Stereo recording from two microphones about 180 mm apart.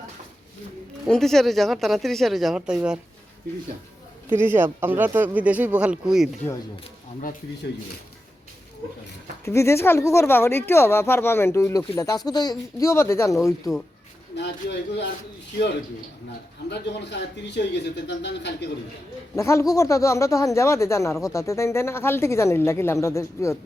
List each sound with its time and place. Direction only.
1.0 s speech: centre (ahead or behind)
4.3 s speech: 10° right (ahead or behind)
9.4 s speech: 15° left (ahead or behind)
14.3 s speech: 70° left (ahead or behind)
16.6 s speech: 70° left (ahead or behind)
19.4 s speech: 15° left (ahead or behind)